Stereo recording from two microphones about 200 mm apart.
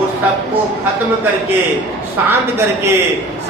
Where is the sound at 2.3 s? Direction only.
10° right (ahead or behind).